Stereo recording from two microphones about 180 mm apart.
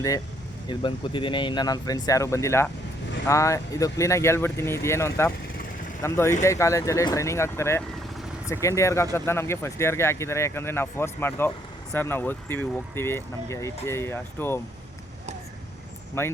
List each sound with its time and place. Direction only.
0.7 s speech: 25° left (ahead or behind)
16.2 s speech: 15° left (ahead or behind)